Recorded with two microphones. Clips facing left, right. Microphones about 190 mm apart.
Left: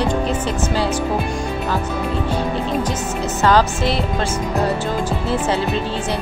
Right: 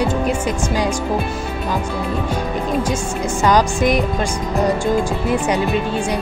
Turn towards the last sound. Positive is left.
turn(degrees=-15)  # may be behind; listen again after turning